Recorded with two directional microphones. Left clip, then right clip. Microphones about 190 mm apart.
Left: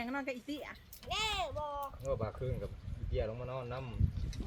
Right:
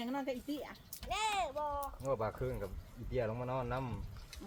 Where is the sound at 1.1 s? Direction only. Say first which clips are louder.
Even; 60° left (ahead or behind).